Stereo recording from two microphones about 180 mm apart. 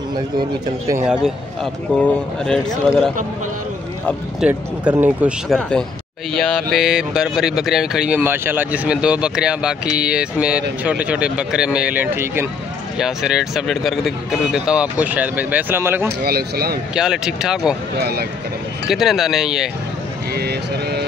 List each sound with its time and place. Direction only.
0.4 s a man's voice: 20° right (ahead or behind)
1.0 s speech: 5° right (ahead or behind)
4.4 s speech: 10° right (ahead or behind)
5.5 s speech: 5° left (ahead or behind); by 16.1 s 10° right (ahead or behind)
16.2 s speech: 60° right (ahead or behind)
16.9 s speech: 5° right (ahead or behind)
17.9 s speech: 60° right (ahead or behind)
18.9 s speech: centre (ahead or behind)
20.3 s speech: 65° right (ahead or behind)